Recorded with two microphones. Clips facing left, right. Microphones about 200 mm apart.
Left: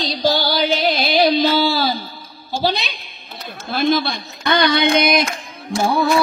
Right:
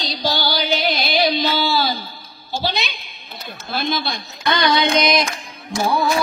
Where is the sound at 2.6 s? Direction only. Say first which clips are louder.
Left 4 dB; 35° left (ahead or behind).